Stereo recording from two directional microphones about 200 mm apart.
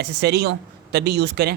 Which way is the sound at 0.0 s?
55° right (ahead or behind).